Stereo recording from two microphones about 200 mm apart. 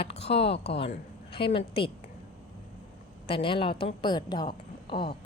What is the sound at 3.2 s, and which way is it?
A woman's voice, 25° left (ahead or behind).